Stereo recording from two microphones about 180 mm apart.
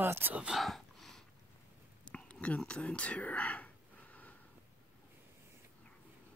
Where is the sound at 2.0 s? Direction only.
5° left (ahead or behind).